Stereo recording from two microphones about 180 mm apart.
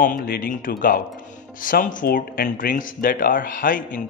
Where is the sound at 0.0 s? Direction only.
50° left (ahead or behind).